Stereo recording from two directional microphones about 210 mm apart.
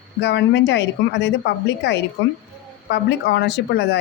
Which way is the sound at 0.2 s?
55° left (ahead or behind).